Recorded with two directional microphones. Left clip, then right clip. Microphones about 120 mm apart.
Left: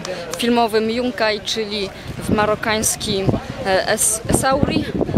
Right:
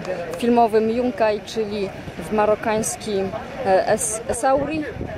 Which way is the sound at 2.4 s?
15° left (ahead or behind).